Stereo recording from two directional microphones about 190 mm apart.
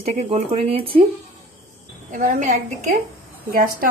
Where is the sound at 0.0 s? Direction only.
30° right (ahead or behind).